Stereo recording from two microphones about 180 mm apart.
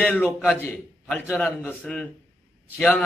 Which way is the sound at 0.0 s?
10° left (ahead or behind).